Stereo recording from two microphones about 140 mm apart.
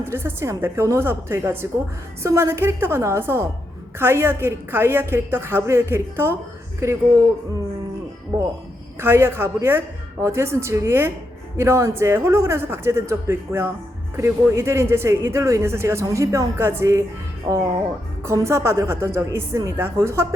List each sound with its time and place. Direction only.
0.0 s a woman's voice: 15° right (ahead or behind)
8.3 s a woman's voice: 20° right (ahead or behind)